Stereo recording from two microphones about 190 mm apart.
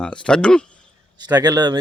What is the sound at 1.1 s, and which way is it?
Speech, 20° right (ahead or behind).